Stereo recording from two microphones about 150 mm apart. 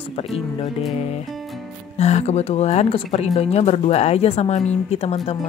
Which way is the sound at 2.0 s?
45° left (ahead or behind).